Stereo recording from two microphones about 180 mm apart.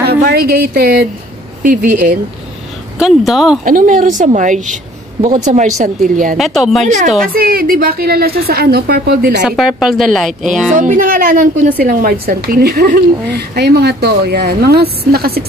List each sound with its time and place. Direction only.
0.0 s a woman's voice: 60° right (ahead or behind)
3.0 s a woman's voice: centre (ahead or behind)
3.6 s a woman's voice: 50° right (ahead or behind)
6.3 s a woman's voice: centre (ahead or behind)
7.3 s a woman's voice: 55° right (ahead or behind)
9.4 s a woman's voice: centre (ahead or behind)
10.8 s a woman's voice: 50° right (ahead or behind)